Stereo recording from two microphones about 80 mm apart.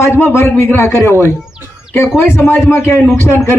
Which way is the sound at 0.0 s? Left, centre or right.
Left.